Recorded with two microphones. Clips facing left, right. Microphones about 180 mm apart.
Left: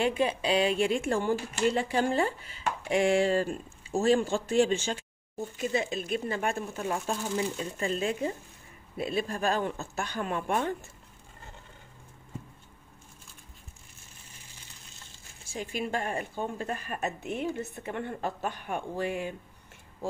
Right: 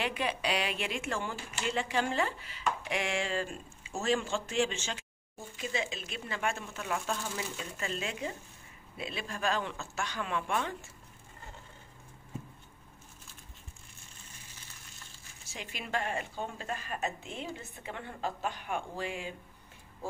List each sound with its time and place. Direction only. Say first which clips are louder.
0.1 s a woman's voice: left 6 dB; 25° left (ahead or behind); by 10.9 s 45° left (ahead or behind)
15.8 s speech: left 2 dB; 45° left (ahead or behind)